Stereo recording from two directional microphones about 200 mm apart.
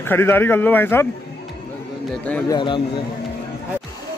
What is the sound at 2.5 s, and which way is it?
Speech, 25° left (ahead or behind).